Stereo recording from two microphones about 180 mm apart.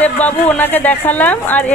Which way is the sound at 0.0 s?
10° left (ahead or behind).